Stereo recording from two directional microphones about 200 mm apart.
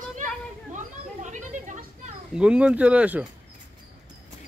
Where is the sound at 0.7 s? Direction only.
40° right (ahead or behind).